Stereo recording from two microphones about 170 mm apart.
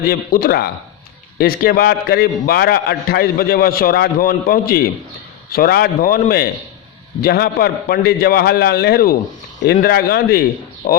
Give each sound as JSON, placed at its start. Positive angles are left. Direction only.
{"t": 0.1, "sound": "a man's voice", "side_deg": 60}